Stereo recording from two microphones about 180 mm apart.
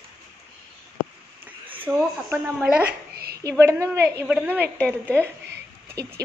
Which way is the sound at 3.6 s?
15° right (ahead or behind).